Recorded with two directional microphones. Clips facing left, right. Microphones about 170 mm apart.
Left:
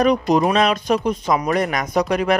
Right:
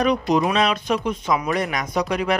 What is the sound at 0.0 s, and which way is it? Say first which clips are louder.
Speech: left 3 dB; 40° left (ahead or behind).